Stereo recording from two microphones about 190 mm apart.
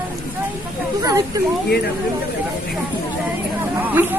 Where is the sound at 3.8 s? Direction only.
10° right (ahead or behind).